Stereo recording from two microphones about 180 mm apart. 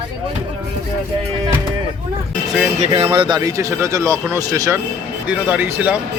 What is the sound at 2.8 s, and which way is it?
Speech, 35° right (ahead or behind).